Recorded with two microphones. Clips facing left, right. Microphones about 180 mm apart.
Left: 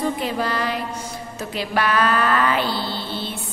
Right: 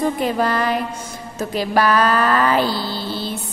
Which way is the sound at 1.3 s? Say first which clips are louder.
Right 5 dB; 40° right (ahead or behind).